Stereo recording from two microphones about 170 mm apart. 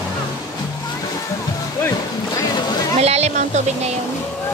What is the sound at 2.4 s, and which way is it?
Boat, 20° left (ahead or behind).